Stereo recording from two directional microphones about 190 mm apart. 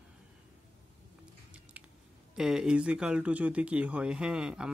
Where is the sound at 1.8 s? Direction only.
10° right (ahead or behind).